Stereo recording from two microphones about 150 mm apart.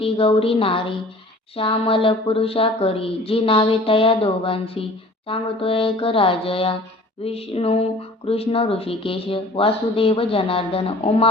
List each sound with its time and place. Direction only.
0.0 s speech: 35° left (ahead or behind)